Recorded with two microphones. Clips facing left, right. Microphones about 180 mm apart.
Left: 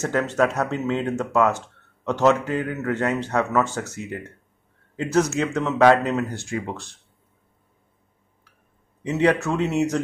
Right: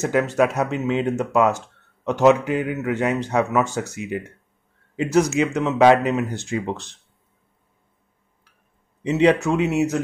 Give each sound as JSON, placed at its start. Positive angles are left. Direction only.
{"t": 0.0, "sound": "speech", "side_deg": -10}
{"t": 9.0, "sound": "speech", "side_deg": -20}
{"t": 9.7, "sound": "speech", "side_deg": -5}